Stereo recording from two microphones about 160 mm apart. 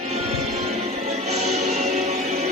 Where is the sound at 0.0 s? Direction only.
40° right (ahead or behind).